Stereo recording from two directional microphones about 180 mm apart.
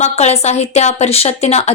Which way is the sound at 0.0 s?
40° left (ahead or behind).